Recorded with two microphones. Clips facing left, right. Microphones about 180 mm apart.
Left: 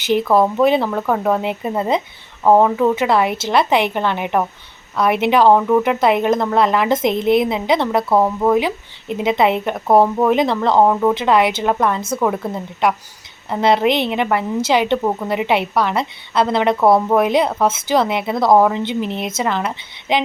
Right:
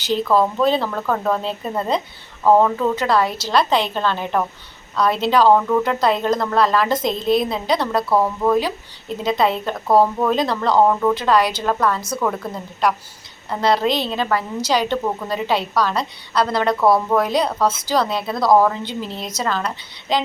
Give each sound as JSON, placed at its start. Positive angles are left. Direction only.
{"t": 0.1, "sound": "speech", "side_deg": 20}